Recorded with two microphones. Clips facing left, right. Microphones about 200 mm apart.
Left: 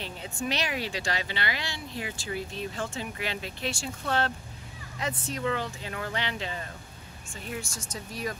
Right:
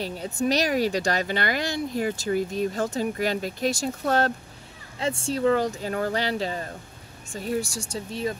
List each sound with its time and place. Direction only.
0.0 s speech: 40° right (ahead or behind)
4.9 s speech: 30° right (ahead or behind)
7.9 s speech: 25° right (ahead or behind)